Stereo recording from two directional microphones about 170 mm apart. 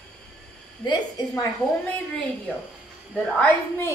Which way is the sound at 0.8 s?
20° left (ahead or behind).